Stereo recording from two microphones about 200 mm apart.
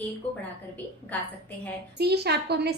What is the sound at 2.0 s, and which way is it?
Speech, 55° right (ahead or behind).